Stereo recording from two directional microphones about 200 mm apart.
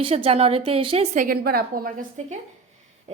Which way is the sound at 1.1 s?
45° right (ahead or behind).